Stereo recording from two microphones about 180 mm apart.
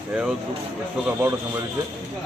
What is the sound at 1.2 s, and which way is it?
Speech, 10° right (ahead or behind).